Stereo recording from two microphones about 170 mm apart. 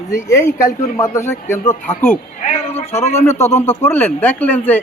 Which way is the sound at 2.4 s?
40° left (ahead or behind).